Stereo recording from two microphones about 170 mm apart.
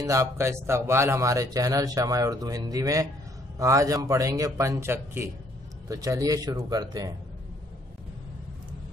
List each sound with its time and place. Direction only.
0.0 s speech: 20° right (ahead or behind)